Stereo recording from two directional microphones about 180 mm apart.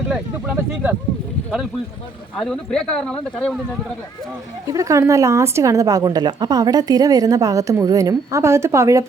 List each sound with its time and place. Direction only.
0.1 s speech: 10° right (ahead or behind)
2.4 s speech: 5° left (ahead or behind)
4.6 s a woman's voice: 20° right (ahead or behind)